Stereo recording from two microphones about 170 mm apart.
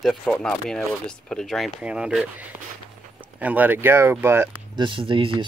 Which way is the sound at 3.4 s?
10° right (ahead or behind).